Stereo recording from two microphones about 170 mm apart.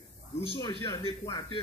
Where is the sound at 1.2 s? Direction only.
20° left (ahead or behind).